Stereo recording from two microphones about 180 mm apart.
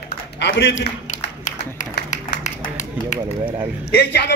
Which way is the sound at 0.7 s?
45° left (ahead or behind).